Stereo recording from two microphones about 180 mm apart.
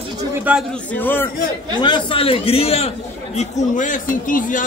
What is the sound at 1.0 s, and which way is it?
Speech, 10° left (ahead or behind).